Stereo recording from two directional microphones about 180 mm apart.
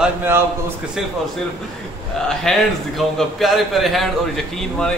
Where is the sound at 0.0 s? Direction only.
10° right (ahead or behind).